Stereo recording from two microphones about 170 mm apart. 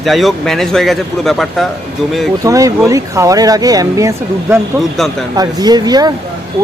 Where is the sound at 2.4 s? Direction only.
20° right (ahead or behind).